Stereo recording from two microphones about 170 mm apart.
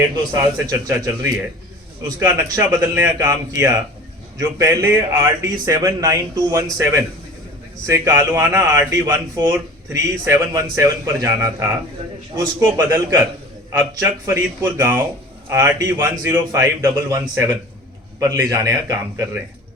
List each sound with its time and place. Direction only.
0.7 s a man's voice: 20° right (ahead or behind)